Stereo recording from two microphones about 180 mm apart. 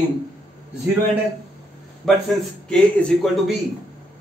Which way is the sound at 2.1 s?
Centre (ahead or behind).